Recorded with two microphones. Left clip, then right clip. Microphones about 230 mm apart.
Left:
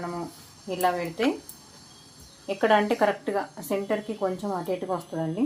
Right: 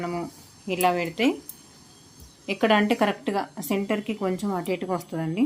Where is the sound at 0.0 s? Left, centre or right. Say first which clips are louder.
Right 3 dB; right.